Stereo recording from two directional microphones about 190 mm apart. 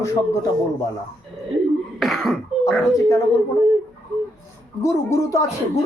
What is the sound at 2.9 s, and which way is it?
Speech, 15° left (ahead or behind).